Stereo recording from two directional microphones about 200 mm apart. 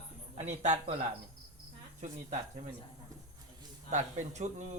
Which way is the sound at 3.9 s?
35° right (ahead or behind).